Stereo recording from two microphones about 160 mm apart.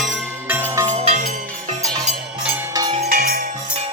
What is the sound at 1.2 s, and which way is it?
Music, 55° right (ahead or behind).